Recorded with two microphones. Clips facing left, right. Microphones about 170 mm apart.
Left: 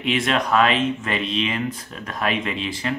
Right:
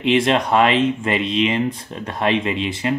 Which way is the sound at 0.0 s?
25° right (ahead or behind).